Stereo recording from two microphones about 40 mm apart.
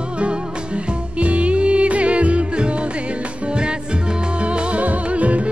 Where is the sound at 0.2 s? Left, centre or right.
Right.